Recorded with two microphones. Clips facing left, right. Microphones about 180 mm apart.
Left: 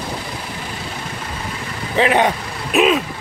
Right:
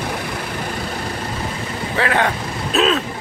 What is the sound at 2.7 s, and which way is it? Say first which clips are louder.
Vehicle: left 2 dB; 10° left (ahead or behind).